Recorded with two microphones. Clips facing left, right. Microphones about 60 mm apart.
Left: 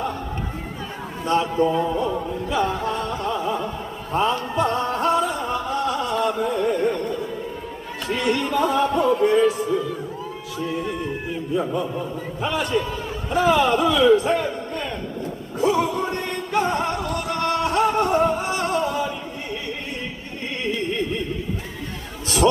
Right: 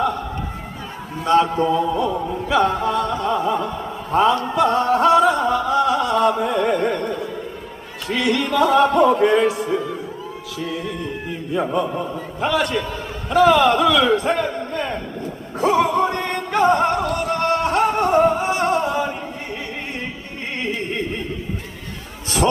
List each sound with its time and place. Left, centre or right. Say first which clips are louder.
1.2 s speech: right 4 dB; right
1.9 s chant: right 3 dB; right
2.5 s a sound: right 5 dB; right
2.8 s music: right 4 dB; right
4.1 s a sound: right 5 dB; right
8.0 s a man's voice: right 2 dB; right
15.5 s music: right 4 dB; right